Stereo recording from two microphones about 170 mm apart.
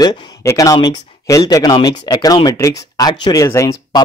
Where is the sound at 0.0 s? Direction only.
20° left (ahead or behind).